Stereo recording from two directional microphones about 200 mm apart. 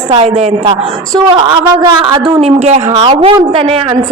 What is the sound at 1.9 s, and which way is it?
A woman's voice, 25° right (ahead or behind).